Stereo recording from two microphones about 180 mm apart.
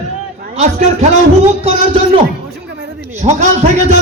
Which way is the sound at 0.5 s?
40° right (ahead or behind).